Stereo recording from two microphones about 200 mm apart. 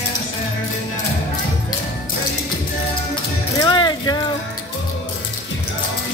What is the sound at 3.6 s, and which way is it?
Music, 20° left (ahead or behind).